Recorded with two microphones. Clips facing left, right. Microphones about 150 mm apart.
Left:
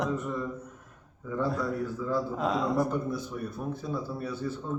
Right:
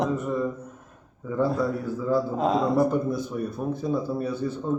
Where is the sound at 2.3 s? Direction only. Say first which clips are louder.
Right 5 dB; 25° right (ahead or behind).